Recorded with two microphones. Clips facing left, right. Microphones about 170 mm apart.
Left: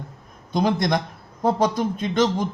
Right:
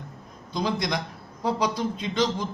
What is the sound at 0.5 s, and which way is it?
A man's voice, 50° left (ahead or behind).